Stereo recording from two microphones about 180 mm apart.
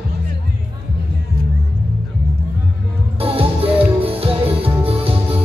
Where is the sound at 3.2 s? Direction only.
30° right (ahead or behind).